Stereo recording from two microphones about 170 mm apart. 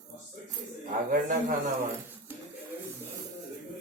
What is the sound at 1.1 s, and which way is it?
Mantra, 55° right (ahead or behind).